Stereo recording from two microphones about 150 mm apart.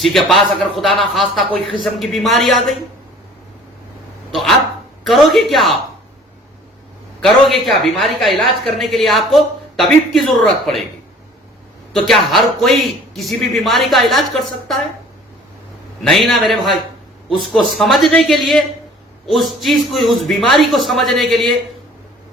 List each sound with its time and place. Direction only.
0.0 s a man's voice: centre (ahead or behind)
5.0 s a man's voice: centre (ahead or behind)
7.2 s a man's voice: centre (ahead or behind)
11.9 s a man's voice: centre (ahead or behind)
16.0 s a man's voice: centre (ahead or behind)